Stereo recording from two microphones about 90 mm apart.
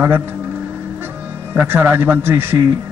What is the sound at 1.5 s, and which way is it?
Speech, 25° right (ahead or behind).